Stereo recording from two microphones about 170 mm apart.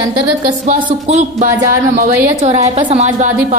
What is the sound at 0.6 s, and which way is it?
A woman's voice, 45° right (ahead or behind).